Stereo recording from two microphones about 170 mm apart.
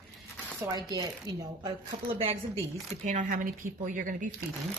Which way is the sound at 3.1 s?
50° right (ahead or behind).